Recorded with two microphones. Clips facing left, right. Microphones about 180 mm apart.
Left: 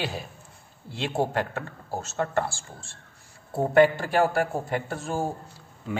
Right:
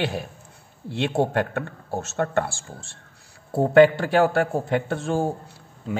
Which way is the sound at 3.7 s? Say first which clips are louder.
Right 4 dB; 75° right (ahead or behind).